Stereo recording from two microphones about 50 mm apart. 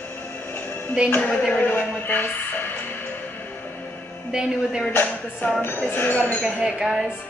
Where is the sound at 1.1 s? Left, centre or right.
Left.